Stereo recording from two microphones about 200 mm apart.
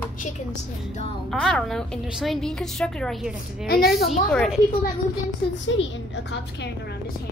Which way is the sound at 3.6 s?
50° left (ahead or behind).